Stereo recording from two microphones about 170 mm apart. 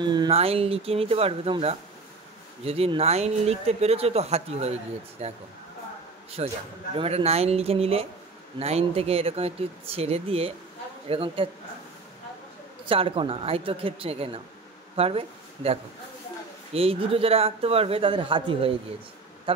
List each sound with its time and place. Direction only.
0.0 s speech: 25° right (ahead or behind)
6.4 s speech: 35° right (ahead or behind)
12.8 s speech: 30° right (ahead or behind)